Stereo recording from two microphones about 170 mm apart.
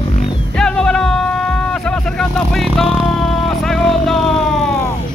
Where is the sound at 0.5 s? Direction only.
5° left (ahead or behind).